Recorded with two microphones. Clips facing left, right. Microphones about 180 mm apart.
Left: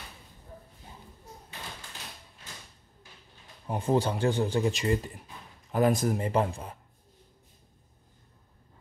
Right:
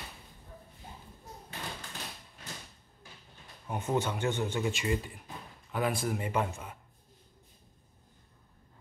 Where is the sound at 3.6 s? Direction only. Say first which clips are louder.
Left 5 dB; 30° left (ahead or behind).